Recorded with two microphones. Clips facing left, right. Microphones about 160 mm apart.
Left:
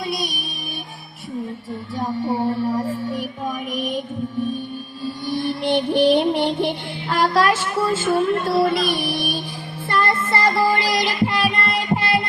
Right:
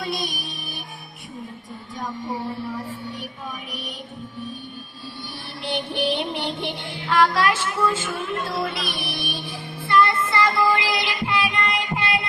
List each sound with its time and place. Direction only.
2.0 s speech: 35° left (ahead or behind)
3.7 s music: 45° left (ahead or behind)
5.6 s music: 45° left (ahead or behind)
9.9 s child singing: 45° left (ahead or behind)